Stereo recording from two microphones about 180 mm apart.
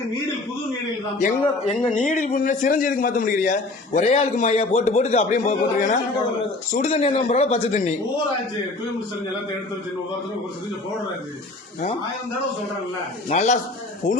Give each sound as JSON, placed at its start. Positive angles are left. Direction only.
{"t": 1.2, "sound": "a man's voice", "side_deg": 35}
{"t": 13.2, "sound": "a man's voice", "side_deg": 40}